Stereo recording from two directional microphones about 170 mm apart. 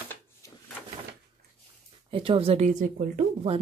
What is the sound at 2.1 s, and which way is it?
Speech, 35° right (ahead or behind).